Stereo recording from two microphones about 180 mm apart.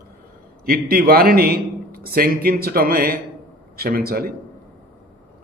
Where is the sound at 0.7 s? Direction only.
55° right (ahead or behind).